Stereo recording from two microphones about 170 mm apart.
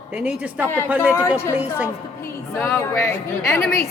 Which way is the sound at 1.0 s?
15° left (ahead or behind).